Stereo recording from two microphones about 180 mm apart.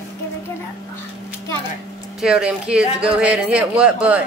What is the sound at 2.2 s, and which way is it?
A woman's voice, 5° right (ahead or behind).